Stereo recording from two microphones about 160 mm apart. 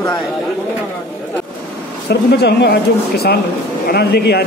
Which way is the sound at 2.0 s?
85° left.